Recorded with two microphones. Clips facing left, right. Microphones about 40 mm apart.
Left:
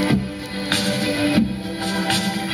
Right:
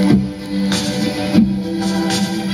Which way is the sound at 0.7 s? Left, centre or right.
Left.